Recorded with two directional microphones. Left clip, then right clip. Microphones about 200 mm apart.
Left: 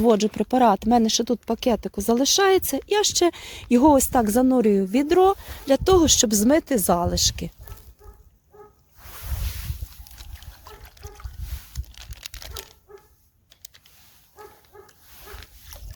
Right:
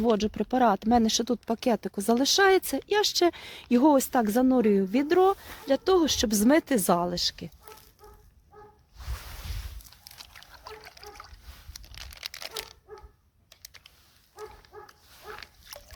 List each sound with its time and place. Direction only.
0.0 s speech: 20° left (ahead or behind)
7.1 s a woman's voice: 30° left (ahead or behind)
10.0 s splash: 20° left (ahead or behind)
11.7 s crumpling: 20° left (ahead or behind)
13.5 s typing: 20° left (ahead or behind)
15.7 s splash: 15° left (ahead or behind)